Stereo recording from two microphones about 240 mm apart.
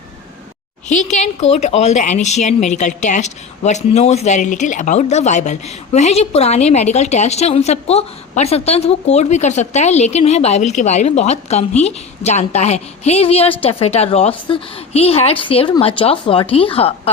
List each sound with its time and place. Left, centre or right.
0.9 s a woman's voice: left